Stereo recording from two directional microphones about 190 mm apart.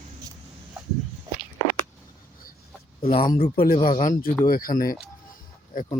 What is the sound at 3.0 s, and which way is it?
Speech, 25° left (ahead or behind).